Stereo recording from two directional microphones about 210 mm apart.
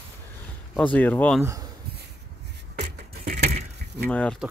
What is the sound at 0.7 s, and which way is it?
Speech, 5° left (ahead or behind).